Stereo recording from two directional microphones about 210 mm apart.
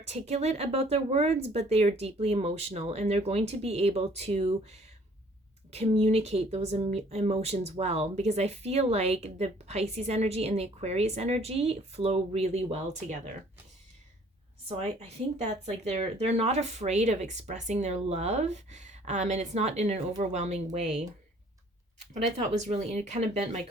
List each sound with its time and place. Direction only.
0.0 s speech: 30° right (ahead or behind)
14.7 s speech: 30° right (ahead or behind)
22.6 s speech: 30° right (ahead or behind)